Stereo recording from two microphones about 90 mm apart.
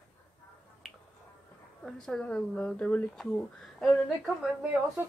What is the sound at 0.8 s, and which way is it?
Finger snapping, 5° right (ahead or behind).